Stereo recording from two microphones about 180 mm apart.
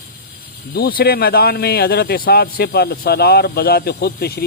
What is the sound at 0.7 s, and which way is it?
Speech, 60° left (ahead or behind).